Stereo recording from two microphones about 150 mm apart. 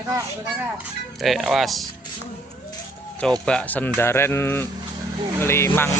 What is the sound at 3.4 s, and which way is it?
Speech, 5° left (ahead or behind).